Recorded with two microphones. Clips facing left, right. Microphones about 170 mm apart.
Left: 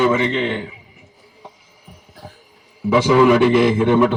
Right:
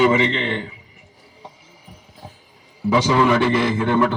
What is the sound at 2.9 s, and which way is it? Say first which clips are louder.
A man's voice: left 4 dB; 10° left (ahead or behind).